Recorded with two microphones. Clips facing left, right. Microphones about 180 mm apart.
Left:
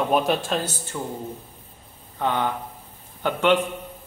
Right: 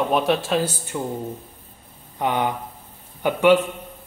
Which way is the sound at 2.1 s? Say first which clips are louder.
Right 2 dB; 15° right (ahead or behind).